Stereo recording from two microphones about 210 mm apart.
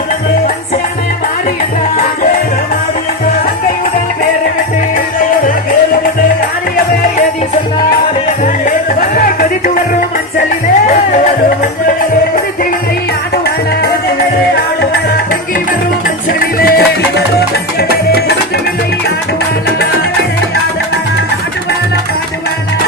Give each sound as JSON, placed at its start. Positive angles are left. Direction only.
{"t": 8.6, "sound": "music", "side_deg": 45}
{"t": 16.0, "sound": "music", "side_deg": 45}